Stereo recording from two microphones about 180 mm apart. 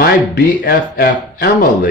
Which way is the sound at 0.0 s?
60° left (ahead or behind).